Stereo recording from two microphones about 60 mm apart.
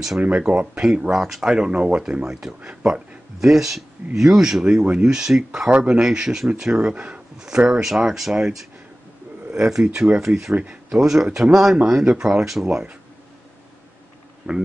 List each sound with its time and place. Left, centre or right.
0.4 s speech: centre
12.6 s speech: centre
14.5 s speech: centre